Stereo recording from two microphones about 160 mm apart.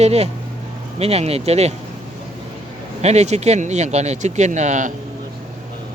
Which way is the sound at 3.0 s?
45° right (ahead or behind).